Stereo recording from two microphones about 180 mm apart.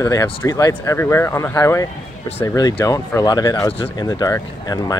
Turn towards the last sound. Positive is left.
turn(degrees=20)  # may be behind; listen again after turning